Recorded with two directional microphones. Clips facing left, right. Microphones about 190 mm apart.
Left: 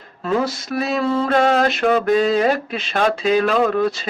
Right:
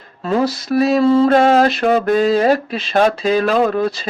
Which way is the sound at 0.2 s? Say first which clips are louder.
Right 3 dB; 35° right (ahead or behind).